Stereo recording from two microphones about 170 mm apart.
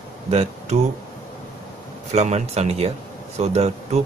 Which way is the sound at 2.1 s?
40° right (ahead or behind).